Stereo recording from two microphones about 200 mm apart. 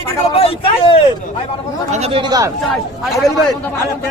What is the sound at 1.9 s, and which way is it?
Speech, 30° right (ahead or behind).